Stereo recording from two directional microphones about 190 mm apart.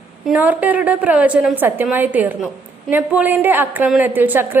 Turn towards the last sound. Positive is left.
turn(degrees=-10)  # may be behind; listen again after turning